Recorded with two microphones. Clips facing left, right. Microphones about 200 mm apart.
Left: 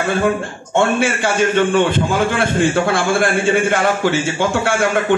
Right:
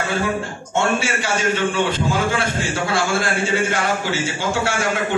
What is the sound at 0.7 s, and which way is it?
A man's voice, 55° left (ahead or behind).